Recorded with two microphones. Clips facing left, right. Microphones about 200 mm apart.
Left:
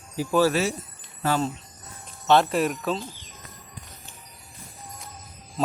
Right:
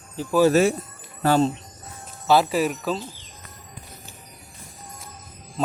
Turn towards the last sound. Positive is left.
turn(degrees=0)  # may be behind; listen again after turning